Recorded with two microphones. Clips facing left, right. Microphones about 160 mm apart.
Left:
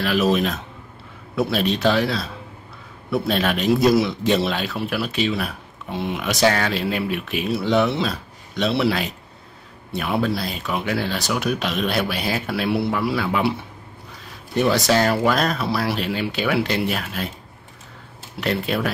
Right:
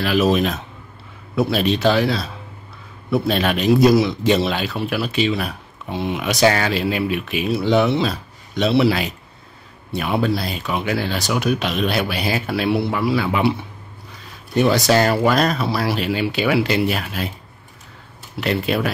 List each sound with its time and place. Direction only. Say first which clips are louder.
0.0 s speech: right 2 dB; centre (ahead or behind)
18.4 s speech: right 2 dB; centre (ahead or behind)